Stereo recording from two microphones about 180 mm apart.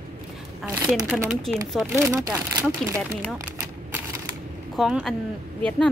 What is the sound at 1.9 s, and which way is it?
Speech, 15° right (ahead or behind).